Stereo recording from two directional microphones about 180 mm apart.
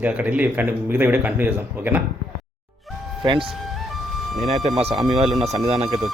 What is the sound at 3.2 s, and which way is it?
Speech, 25° right (ahead or behind).